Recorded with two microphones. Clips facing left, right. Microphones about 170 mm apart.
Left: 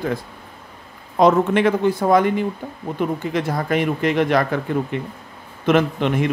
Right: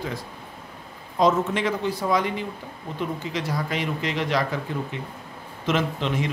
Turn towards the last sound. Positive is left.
turn(degrees=55)  # may be behind; listen again after turning